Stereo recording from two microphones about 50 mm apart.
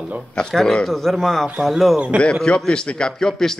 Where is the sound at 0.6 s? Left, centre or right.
Centre.